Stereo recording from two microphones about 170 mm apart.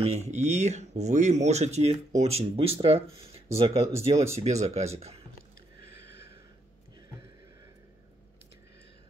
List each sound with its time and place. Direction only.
0.0 s speech: 40° right (ahead or behind)